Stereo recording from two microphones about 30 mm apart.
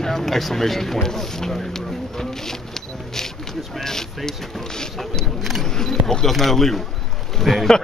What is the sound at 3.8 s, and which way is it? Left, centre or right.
Speech, centre.